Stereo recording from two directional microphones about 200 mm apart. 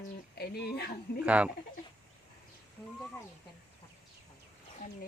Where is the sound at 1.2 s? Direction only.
5° right (ahead or behind).